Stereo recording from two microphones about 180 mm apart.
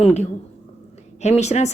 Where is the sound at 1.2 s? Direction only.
40° left (ahead or behind).